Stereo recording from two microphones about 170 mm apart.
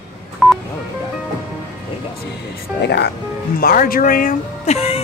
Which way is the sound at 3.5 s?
60° left (ahead or behind).